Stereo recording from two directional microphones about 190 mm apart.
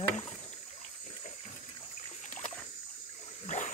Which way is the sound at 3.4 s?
40° left (ahead or behind).